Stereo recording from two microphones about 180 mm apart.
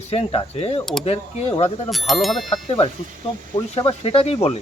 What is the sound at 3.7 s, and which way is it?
Speech, 30° left (ahead or behind).